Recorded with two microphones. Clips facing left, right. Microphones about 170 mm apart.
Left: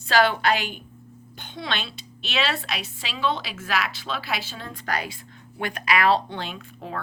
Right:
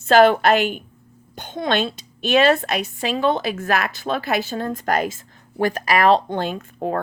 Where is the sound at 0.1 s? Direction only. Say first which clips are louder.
Right 7 dB; 45° right (ahead or behind).